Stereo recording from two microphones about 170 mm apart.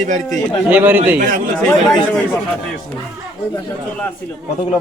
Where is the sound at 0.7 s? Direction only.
10° right (ahead or behind).